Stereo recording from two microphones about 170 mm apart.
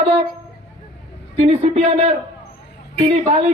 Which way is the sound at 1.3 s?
40° right (ahead or behind).